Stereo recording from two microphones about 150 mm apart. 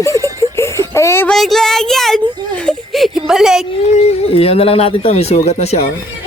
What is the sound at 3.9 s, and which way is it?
Speech, 40° left (ahead or behind).